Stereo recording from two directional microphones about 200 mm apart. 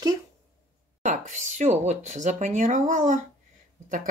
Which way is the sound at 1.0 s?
40° right (ahead or behind).